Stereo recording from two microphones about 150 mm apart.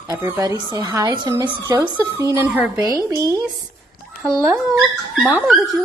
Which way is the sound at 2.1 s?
20° right (ahead or behind).